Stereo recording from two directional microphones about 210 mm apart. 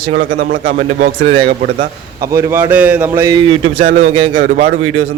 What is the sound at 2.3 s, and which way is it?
A man's voice, 10° right (ahead or behind).